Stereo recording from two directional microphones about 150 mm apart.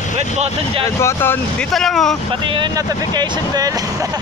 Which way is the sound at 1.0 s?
15° left (ahead or behind).